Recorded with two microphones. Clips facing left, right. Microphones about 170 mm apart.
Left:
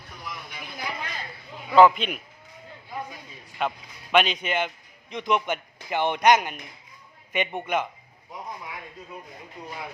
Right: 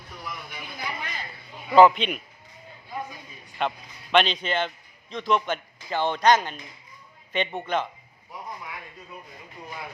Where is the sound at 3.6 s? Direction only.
5° left (ahead or behind).